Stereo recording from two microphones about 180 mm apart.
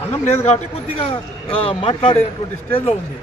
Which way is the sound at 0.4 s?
35° left (ahead or behind).